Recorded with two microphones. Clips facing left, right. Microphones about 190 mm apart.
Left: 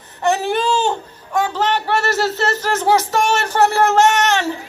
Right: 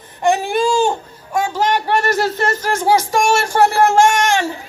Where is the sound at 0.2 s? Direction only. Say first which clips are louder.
Right 2 dB; 10° right (ahead or behind).